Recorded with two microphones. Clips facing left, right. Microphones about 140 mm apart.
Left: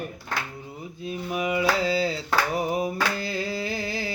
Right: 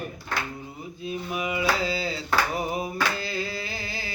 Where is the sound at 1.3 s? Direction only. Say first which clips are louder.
Left 3 dB; 40° left (ahead or behind).